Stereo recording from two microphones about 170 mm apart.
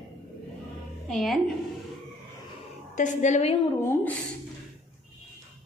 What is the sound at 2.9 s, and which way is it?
Speech, 45° left (ahead or behind).